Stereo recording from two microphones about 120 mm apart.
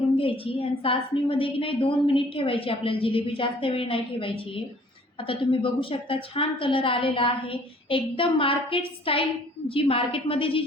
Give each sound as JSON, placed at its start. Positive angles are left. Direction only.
{"t": 0.2, "sound": "a woman's voice", "side_deg": 50}